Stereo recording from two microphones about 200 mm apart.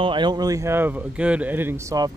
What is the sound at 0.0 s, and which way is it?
A man's voice, 25° right (ahead or behind).